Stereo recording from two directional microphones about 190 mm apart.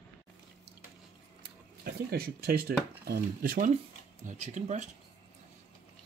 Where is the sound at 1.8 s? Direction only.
55° right (ahead or behind).